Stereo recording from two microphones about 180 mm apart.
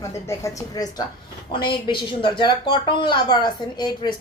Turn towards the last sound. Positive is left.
turn(degrees=25)  # may be behind; listen again after turning